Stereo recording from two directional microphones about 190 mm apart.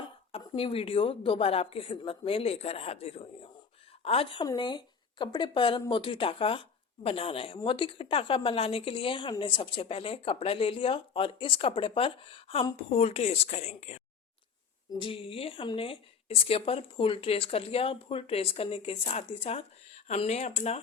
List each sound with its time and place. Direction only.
0.3 s speech: 30° left (ahead or behind)